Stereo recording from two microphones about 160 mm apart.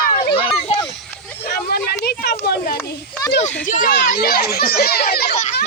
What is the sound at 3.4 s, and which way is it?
Speech, 55° left (ahead or behind).